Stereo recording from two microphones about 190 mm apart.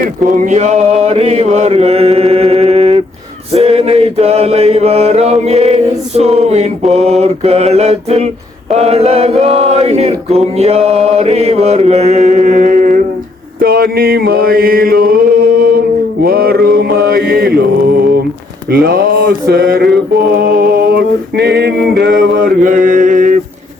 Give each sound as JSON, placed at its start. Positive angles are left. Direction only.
{"t": 0.0, "sound": "mantra", "side_deg": -45}
{"t": 3.5, "sound": "chant", "side_deg": -30}
{"t": 16.2, "sound": "mantra", "side_deg": -50}
{"t": 18.7, "sound": "speech", "side_deg": -50}
{"t": 19.2, "sound": "mantra", "side_deg": -55}
{"t": 20.4, "sound": "a sound", "side_deg": -50}
{"t": 22.4, "sound": "mantra", "side_deg": -45}